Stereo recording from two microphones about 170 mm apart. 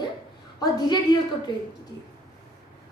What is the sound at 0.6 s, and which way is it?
Speech, 25° left (ahead or behind).